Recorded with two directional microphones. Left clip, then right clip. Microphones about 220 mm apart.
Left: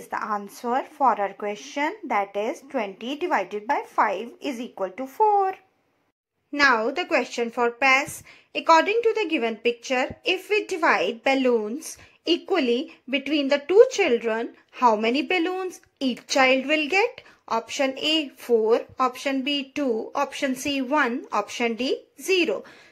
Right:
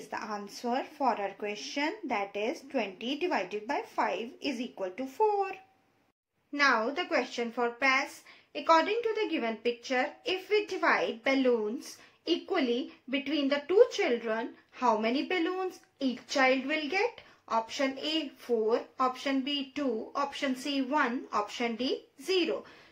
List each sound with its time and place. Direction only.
0.2 s a woman's voice: 20° left (ahead or behind)
6.5 s a woman's voice: 30° left (ahead or behind)